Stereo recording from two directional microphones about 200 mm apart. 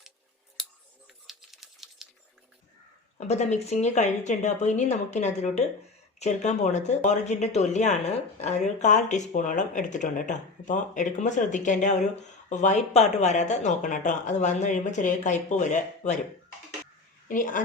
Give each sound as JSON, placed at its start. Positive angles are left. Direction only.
{"t": 1.3, "sound": "typewriter", "side_deg": 0}
{"t": 3.2, "sound": "speech", "side_deg": 35}
{"t": 17.2, "sound": "a woman's voice", "side_deg": 40}